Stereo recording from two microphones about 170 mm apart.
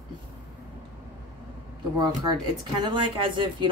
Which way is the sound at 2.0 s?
25° right (ahead or behind).